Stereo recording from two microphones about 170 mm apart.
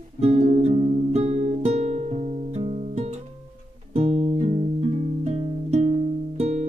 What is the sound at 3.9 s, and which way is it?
Music, 35° right (ahead or behind).